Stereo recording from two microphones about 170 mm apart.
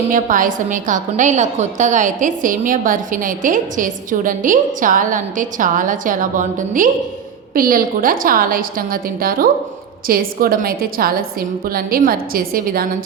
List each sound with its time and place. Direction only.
0.1 s a woman's voice: 50° right (ahead or behind)